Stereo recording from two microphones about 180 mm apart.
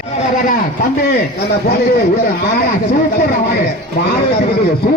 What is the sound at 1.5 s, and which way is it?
Speech, 60° left (ahead or behind).